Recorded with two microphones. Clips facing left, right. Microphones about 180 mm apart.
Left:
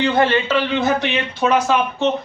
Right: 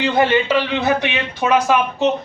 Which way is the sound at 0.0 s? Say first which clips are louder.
Right 1 dB; 15° right (ahead or behind).